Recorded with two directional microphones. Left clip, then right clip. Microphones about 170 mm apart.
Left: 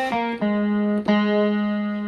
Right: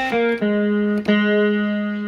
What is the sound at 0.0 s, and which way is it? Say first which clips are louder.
Music: right 4 dB; 30° left (ahead or behind).